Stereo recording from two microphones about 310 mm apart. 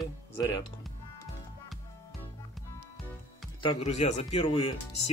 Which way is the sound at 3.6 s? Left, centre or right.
Centre.